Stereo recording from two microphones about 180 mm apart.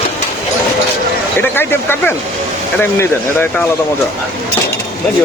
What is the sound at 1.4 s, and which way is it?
Speech, 10° left (ahead or behind).